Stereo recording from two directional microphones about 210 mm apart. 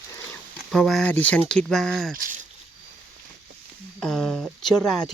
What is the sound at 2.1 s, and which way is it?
Speech, 40° right (ahead or behind).